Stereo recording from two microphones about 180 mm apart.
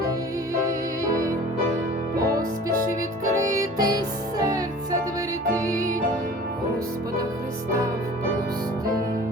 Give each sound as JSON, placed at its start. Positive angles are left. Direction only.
{"t": 0.5, "sound": "music", "side_deg": -15}